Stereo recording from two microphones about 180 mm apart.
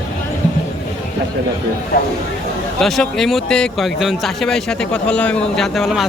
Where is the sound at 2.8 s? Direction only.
Centre (ahead or behind).